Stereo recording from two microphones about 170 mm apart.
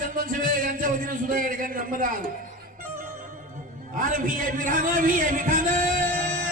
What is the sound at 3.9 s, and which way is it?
A man's voice, 55° right (ahead or behind).